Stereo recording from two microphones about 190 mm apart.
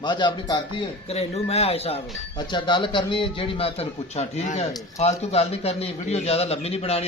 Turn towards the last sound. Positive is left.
turn(degrees=30)  # may be behind; listen again after turning